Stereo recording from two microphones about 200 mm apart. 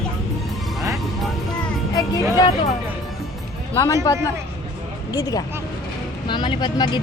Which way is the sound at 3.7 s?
15° left (ahead or behind).